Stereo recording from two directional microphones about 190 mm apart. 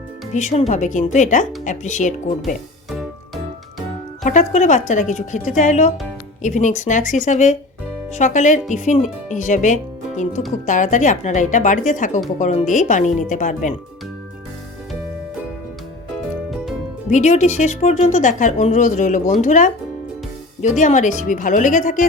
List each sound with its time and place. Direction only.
0.3 s speech: 40° left (ahead or behind)
2.9 s music: centre (ahead or behind)
4.2 s speech: 40° left (ahead or behind)
17.1 s speech: 40° left (ahead or behind)